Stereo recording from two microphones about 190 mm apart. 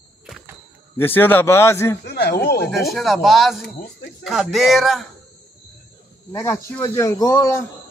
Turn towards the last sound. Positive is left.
turn(degrees=15)  # may be behind; listen again after turning